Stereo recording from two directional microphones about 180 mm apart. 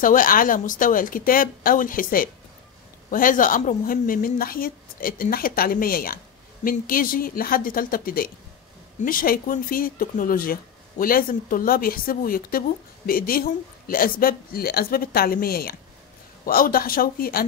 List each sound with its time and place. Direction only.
0.0 s speech: 50° left (ahead or behind)